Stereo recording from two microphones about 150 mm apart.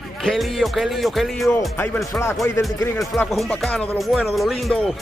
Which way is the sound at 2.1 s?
10° left (ahead or behind).